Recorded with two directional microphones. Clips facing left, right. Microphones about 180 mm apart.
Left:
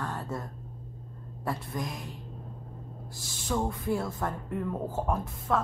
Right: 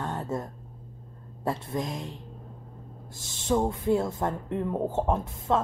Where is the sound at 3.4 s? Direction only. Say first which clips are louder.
Right 5 dB; 25° right (ahead or behind).